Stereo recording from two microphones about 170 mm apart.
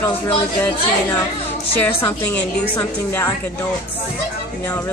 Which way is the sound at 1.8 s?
10° left (ahead or behind).